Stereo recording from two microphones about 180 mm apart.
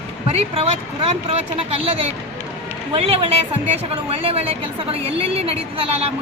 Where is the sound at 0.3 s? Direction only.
35° right (ahead or behind).